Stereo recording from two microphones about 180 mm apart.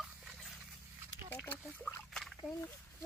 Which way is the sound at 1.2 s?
10° left (ahead or behind).